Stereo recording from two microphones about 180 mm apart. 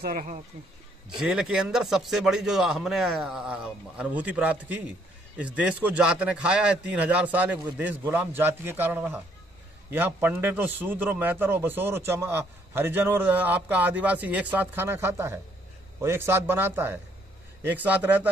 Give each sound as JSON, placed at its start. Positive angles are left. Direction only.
{"t": 0.0, "sound": "speech", "side_deg": -50}
{"t": 1.1, "sound": "a man's voice", "side_deg": -5}